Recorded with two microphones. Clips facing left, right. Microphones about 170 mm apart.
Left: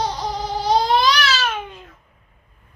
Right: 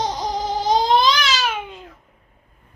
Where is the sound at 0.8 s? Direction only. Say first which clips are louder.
Right 1 dB; 20° right (ahead or behind).